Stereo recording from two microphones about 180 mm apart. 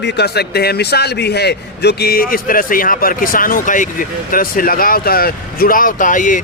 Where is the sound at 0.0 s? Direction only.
65° left (ahead or behind).